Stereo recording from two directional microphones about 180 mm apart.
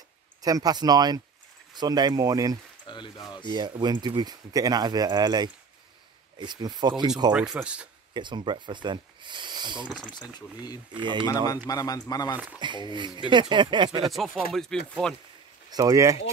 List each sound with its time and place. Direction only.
0.4 s speech: 20° right (ahead or behind)
2.8 s speech: 25° left (ahead or behind)
3.4 s speech: 25° right (ahead or behind)
7.3 s speech: 5° right (ahead or behind)
8.1 s speech: 25° right (ahead or behind)
11.0 s speech: 25° right (ahead or behind)
11.2 s speech: 20° left (ahead or behind)
12.5 s speech: 25° right (ahead or behind)
14.0 s speech: centre (ahead or behind)
15.7 s speech: 20° right (ahead or behind)